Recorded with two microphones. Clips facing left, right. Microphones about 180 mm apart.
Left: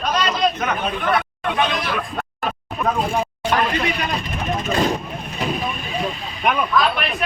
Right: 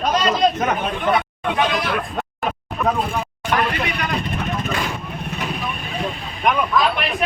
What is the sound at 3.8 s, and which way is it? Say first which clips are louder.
Speech: left 2 dB; 25° left (ahead or behind).